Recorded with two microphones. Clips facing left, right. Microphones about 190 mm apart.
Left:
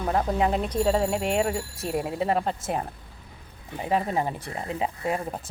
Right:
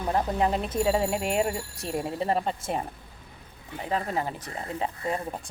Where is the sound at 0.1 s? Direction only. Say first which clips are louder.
Left 1 dB; centre (ahead or behind).